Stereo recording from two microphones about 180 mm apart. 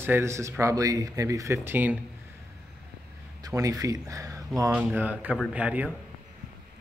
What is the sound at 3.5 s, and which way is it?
Speech, 20° right (ahead or behind).